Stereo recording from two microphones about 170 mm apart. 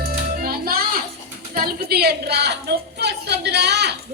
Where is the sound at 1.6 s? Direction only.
65° right (ahead or behind).